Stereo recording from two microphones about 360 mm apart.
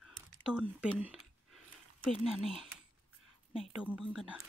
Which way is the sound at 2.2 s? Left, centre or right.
Centre.